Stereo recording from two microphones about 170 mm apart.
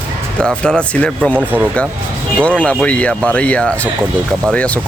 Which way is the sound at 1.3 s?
10° right (ahead or behind).